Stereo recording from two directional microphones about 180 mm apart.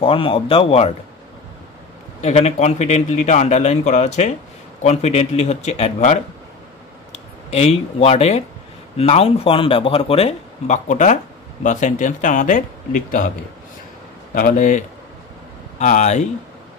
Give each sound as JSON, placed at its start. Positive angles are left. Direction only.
{"t": 0.0, "sound": "speech", "side_deg": 30}
{"t": 2.2, "sound": "speech", "side_deg": 40}
{"t": 7.5, "sound": "speech", "side_deg": 35}
{"t": 14.3, "sound": "speech", "side_deg": 50}